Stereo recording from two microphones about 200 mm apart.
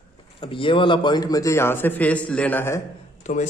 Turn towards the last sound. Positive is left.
turn(degrees=35)  # may be behind; listen again after turning